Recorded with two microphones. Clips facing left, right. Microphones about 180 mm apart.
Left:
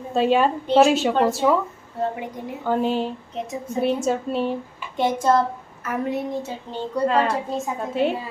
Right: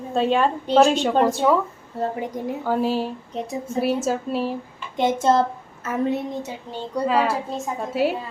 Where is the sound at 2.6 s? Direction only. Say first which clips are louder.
Left 1 dB; 5° right (ahead or behind).